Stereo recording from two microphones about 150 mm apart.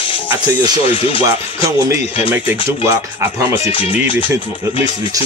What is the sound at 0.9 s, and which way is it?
Speech, 40° left (ahead or behind).